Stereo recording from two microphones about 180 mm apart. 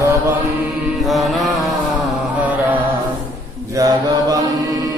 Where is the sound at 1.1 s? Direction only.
Centre (ahead or behind).